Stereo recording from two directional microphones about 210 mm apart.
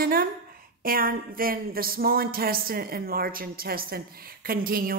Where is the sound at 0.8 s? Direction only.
45° right (ahead or behind).